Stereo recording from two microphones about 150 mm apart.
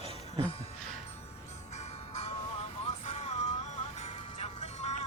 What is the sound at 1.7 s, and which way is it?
Music, 45° left (ahead or behind).